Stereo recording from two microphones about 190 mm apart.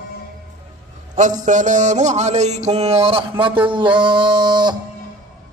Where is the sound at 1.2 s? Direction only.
40° right (ahead or behind); by 4.8 s 20° right (ahead or behind).